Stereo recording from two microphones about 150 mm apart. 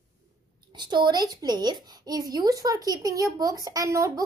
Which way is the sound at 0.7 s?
30° right (ahead or behind).